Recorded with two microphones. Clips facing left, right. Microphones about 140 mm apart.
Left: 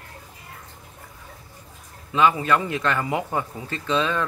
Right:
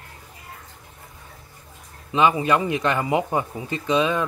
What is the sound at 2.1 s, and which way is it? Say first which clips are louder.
Speech: right 1 dB; 20° right (ahead or behind).